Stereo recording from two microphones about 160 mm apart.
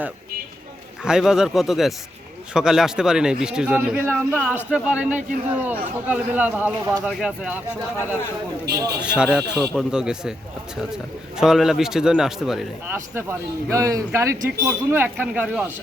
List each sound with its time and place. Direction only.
1.0 s a man's voice: 5° right (ahead or behind)
9.0 s a man's voice: 5° right (ahead or behind)
12.9 s a man's voice: 15° right (ahead or behind)